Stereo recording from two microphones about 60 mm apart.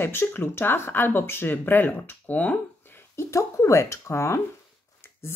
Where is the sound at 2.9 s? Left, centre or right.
Left.